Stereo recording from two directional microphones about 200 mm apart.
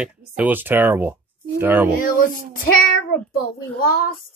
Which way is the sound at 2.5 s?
45° left (ahead or behind).